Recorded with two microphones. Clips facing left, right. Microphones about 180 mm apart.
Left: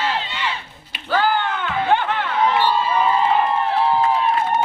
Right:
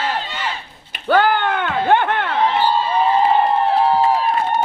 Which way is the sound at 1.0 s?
60° right (ahead or behind).